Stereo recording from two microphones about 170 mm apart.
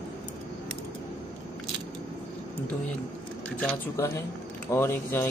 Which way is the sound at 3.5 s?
10° left (ahead or behind).